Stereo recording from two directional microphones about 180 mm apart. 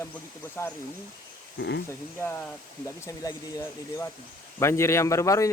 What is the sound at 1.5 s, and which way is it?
Speech, 75° left (ahead or behind).